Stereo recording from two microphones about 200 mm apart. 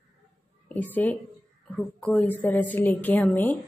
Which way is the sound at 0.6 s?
10° left (ahead or behind).